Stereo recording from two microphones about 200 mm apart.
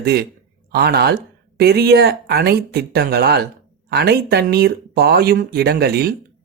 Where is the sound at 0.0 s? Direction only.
55° right (ahead or behind).